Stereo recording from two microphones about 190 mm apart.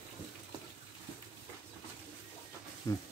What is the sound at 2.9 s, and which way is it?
Speech, 15° left (ahead or behind).